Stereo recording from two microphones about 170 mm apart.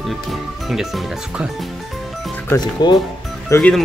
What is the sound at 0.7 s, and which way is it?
Speech, centre (ahead or behind).